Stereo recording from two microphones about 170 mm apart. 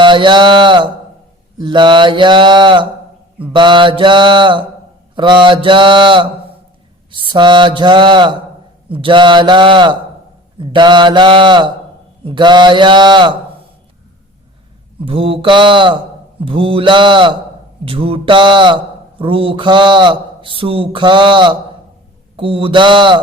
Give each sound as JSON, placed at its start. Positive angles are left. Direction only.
{"t": 0.0, "sound": "speech", "side_deg": -30}
{"t": 15.0, "sound": "speech", "side_deg": -35}